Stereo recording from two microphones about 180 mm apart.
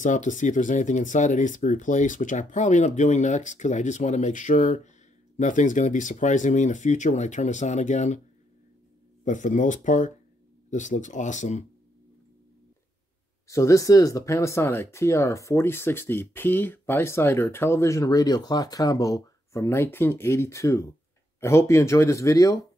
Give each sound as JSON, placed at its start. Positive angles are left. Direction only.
{"t": 0.0, "sound": "speech", "side_deg": 45}
{"t": 9.2, "sound": "speech", "side_deg": 45}
{"t": 13.5, "sound": "speech", "side_deg": 15}